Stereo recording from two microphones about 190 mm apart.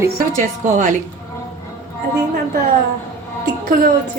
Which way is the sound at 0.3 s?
40° right (ahead or behind).